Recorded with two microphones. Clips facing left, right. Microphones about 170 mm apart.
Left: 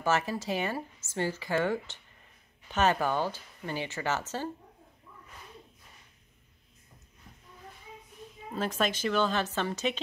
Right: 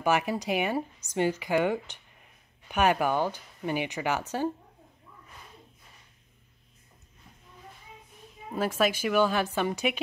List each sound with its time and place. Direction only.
0.0 s speech: 15° right (ahead or behind)
8.5 s speech: 10° right (ahead or behind)